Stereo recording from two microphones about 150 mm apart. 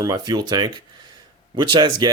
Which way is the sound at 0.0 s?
25° right (ahead or behind).